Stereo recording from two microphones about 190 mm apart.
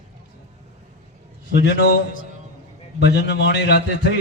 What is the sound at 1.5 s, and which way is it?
Speech, 65° left (ahead or behind).